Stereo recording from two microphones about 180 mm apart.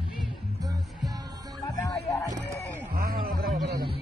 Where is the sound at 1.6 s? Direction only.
20° left (ahead or behind).